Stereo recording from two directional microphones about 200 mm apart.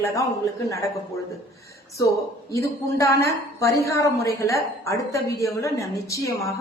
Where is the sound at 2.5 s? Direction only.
15° left (ahead or behind).